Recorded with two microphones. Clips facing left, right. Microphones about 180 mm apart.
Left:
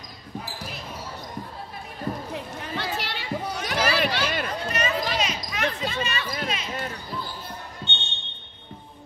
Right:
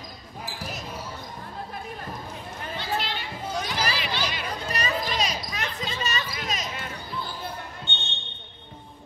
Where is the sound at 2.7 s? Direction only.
65° left (ahead or behind).